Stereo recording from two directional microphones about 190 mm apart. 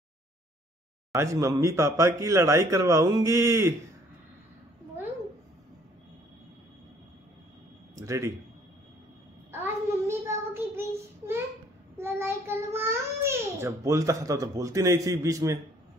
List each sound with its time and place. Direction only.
1.1 s speech: 15° right (ahead or behind)
7.9 s speech: 15° right (ahead or behind)
10.0 s child singing: 15° right (ahead or behind)
12.0 s a child's voice: 10° right (ahead or behind)